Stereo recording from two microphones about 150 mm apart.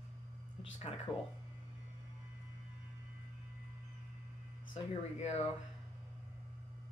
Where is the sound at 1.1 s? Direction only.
5° left (ahead or behind).